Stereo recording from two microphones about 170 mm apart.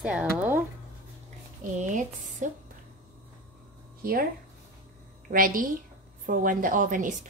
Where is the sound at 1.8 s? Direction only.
45° right (ahead or behind).